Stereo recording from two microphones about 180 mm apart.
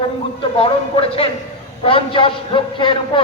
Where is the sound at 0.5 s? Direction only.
30° left (ahead or behind).